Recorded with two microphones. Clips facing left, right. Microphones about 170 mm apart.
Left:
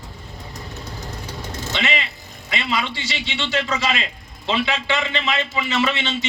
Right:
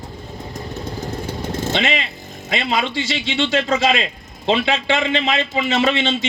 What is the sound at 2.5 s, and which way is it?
Speech, 45° right (ahead or behind).